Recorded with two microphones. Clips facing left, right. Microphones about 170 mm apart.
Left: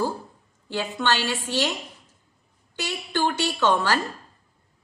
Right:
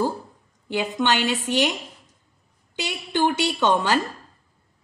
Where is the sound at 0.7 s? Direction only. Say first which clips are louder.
Right 3 dB; 15° right (ahead or behind).